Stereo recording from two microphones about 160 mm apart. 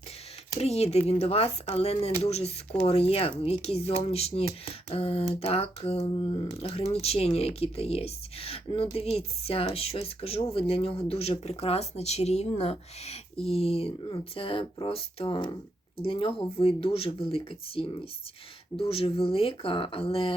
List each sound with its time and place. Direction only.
0.6 s speech: 40° left (ahead or behind)